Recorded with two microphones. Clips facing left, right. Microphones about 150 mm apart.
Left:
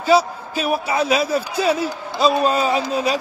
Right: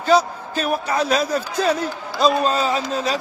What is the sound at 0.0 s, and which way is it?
A man's voice, 10° left (ahead or behind).